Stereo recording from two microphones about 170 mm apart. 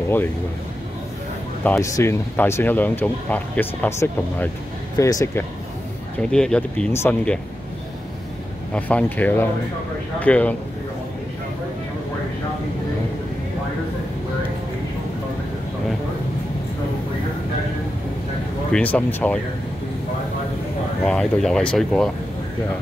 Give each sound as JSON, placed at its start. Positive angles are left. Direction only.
{"t": 1.6, "sound": "speech", "side_deg": 15}
{"t": 6.3, "sound": "speech", "side_deg": 5}
{"t": 8.7, "sound": "speech", "side_deg": 10}
{"t": 18.7, "sound": "speech", "side_deg": 10}
{"t": 21.0, "sound": "speech", "side_deg": 5}